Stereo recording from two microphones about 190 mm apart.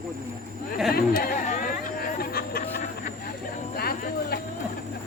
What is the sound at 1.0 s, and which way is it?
Speech, 50° left (ahead or behind).